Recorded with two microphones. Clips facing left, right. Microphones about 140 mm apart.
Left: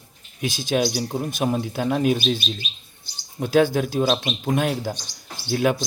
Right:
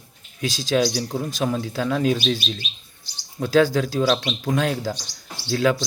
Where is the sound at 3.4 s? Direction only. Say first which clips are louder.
Even; 20° left (ahead or behind).